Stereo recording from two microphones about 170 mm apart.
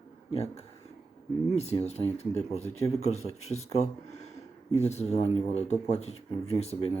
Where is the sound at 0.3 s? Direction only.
35° left (ahead or behind).